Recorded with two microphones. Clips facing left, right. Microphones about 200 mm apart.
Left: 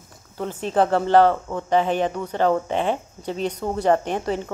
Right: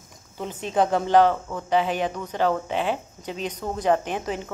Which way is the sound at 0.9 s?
15° right (ahead or behind).